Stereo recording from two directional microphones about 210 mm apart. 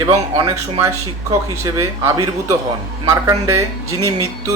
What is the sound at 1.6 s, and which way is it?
Speech, 15° right (ahead or behind).